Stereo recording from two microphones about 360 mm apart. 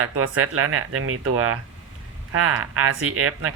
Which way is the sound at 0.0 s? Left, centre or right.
Right.